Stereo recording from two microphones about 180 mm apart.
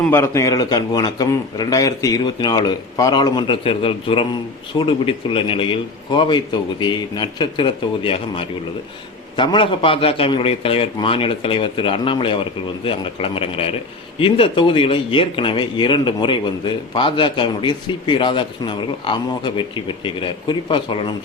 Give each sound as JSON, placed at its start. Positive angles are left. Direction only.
{"t": 0.0, "sound": "speech", "side_deg": 15}